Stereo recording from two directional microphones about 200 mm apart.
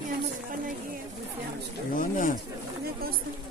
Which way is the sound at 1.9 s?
40° left (ahead or behind).